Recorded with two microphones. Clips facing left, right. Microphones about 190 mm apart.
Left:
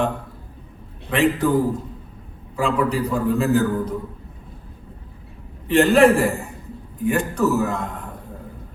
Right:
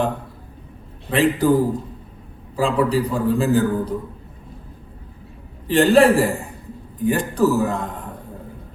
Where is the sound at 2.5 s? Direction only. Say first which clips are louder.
Right 2 dB; 30° right (ahead or behind).